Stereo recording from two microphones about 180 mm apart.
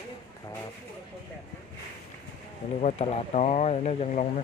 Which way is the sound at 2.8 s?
40° left (ahead or behind).